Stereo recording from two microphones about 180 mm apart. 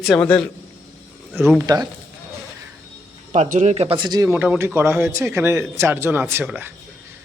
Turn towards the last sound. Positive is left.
turn(degrees=-10)  # may be behind; listen again after turning